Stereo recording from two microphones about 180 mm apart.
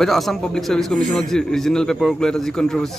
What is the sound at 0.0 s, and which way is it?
A man's voice, centre (ahead or behind).